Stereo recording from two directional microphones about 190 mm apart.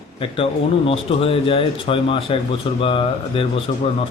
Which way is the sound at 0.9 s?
30° left (ahead or behind).